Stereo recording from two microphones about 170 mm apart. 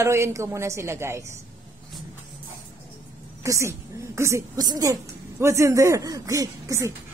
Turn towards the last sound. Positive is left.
turn(degrees=-20)  # may be behind; listen again after turning